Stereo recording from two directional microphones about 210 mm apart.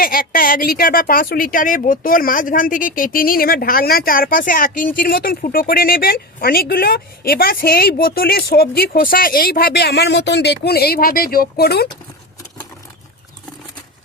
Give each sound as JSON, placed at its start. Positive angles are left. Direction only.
{"t": 0.0, "sound": "speech", "side_deg": 45}